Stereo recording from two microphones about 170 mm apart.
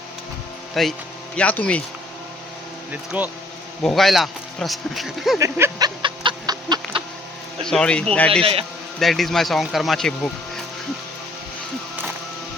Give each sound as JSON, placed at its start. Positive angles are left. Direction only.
{"t": 0.7, "sound": "speech", "side_deg": 0}
{"t": 2.9, "sound": "speech", "side_deg": -10}
{"t": 3.8, "sound": "speech", "side_deg": 0}
{"t": 5.4, "sound": "speech", "side_deg": -15}
{"t": 6.0, "sound": "chicken", "side_deg": -30}
{"t": 7.6, "sound": "speech", "side_deg": 5}